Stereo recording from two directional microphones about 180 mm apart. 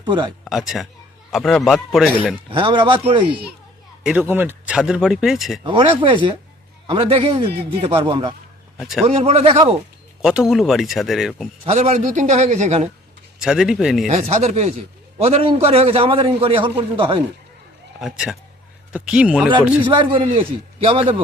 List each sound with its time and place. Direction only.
0.0 s speech: 25° right (ahead or behind)
0.4 s speech: centre (ahead or behind)
2.5 s a man's voice: 25° right (ahead or behind)
4.0 s speech: 5° right (ahead or behind)
5.6 s a man's voice: 25° right (ahead or behind)
8.8 s speech: centre (ahead or behind)
9.0 s a man's voice: 35° right (ahead or behind)
10.2 s speech: 5° right (ahead or behind)
11.6 s a man's voice: 35° right (ahead or behind)
13.4 s speech: 5° right (ahead or behind)
14.1 s a man's voice: 40° right (ahead or behind)
18.0 s speech: centre (ahead or behind)
19.9 s a man's voice: 25° right (ahead or behind)